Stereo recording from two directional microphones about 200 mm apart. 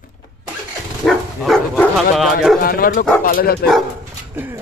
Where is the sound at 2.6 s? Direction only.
45° left (ahead or behind).